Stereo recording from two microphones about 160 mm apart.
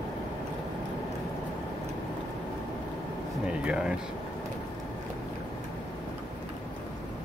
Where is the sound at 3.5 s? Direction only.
5° right (ahead or behind).